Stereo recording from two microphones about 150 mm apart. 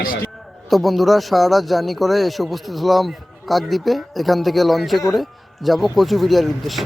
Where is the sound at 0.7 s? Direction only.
Centre (ahead or behind).